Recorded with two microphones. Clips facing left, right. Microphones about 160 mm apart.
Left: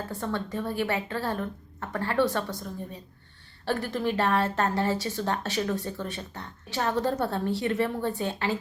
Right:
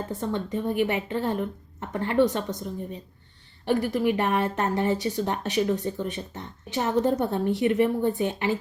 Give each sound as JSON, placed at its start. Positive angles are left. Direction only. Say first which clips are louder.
{"t": 0.1, "sound": "a woman's voice", "louder": "right 3 dB", "side_deg": -20}